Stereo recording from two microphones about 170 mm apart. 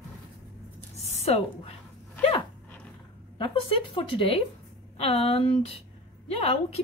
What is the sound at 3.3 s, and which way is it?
A woman's voice, 30° left (ahead or behind).